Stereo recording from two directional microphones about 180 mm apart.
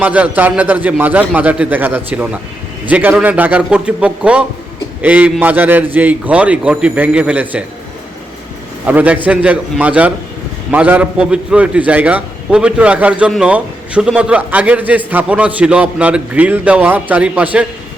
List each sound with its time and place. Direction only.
0.0 s a man's voice: 10° right (ahead or behind)
8.9 s a man's voice: 10° right (ahead or behind)